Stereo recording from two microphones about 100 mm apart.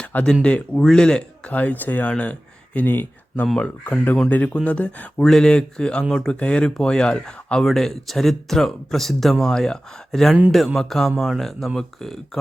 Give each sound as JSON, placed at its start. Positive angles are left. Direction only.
{"t": 0.0, "sound": "speech", "side_deg": 15}
{"t": 3.4, "sound": "speech", "side_deg": 10}